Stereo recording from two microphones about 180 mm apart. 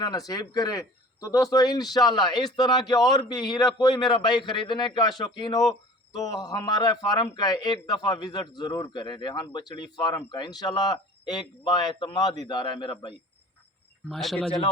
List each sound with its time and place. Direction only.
0.0 s a man's voice: 20° left (ahead or behind)
14.1 s speech: centre (ahead or behind)